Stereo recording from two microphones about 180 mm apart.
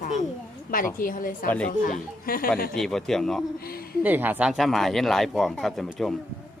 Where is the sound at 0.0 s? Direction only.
45° left (ahead or behind).